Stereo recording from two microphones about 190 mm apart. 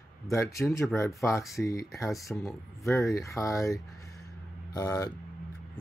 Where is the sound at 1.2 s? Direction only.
15° left (ahead or behind).